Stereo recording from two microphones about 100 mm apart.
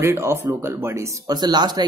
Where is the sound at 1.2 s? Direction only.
45° right (ahead or behind).